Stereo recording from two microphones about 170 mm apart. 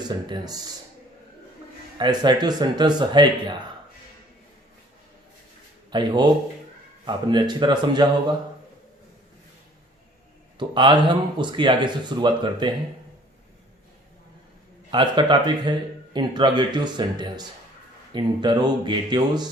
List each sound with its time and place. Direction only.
0.3 s speech: 25° right (ahead or behind)
2.0 s speech: 25° right (ahead or behind)
5.9 s speech: 25° right (ahead or behind)
10.6 s speech: 25° right (ahead or behind)
14.8 s speech: 30° right (ahead or behind)